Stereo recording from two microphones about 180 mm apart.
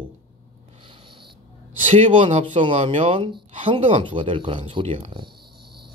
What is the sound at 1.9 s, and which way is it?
Speech, 30° right (ahead or behind).